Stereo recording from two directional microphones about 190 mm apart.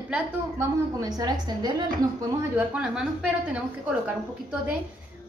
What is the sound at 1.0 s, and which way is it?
Speech, 20° right (ahead or behind).